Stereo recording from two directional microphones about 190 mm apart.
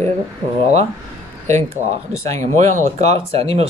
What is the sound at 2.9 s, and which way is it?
Speech, 30° right (ahead or behind).